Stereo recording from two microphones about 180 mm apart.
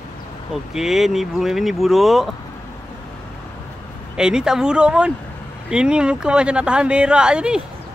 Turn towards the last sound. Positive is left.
turn(degrees=-5)  # may be behind; listen again after turning